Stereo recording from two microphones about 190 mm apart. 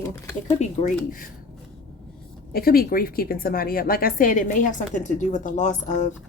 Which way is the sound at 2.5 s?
50° left (ahead or behind).